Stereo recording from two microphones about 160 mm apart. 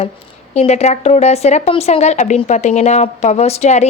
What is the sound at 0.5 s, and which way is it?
A woman's voice, 40° left (ahead or behind).